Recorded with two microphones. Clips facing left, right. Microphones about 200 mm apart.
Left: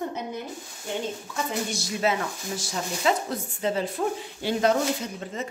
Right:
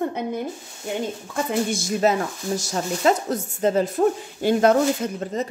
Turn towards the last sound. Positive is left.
turn(degrees=-50)  # may be behind; listen again after turning